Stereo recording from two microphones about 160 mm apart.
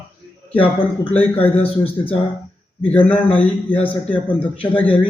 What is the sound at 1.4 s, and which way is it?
Speech, 35° left (ahead or behind).